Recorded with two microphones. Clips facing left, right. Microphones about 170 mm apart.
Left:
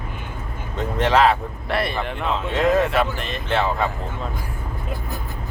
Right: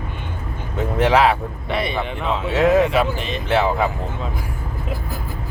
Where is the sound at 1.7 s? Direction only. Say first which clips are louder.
Right 1 dB; centre (ahead or behind).